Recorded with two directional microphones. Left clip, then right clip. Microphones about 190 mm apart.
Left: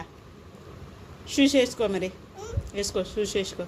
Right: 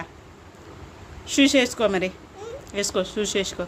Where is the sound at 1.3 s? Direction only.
25° right (ahead or behind).